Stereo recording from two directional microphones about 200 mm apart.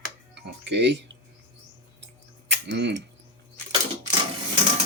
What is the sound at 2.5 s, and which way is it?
Tick-tock, 60° right (ahead or behind).